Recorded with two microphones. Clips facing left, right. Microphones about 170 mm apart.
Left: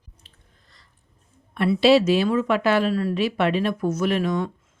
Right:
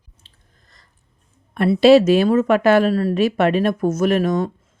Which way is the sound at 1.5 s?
45° right (ahead or behind).